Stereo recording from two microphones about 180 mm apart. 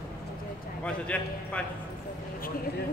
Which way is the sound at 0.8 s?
5° left (ahead or behind).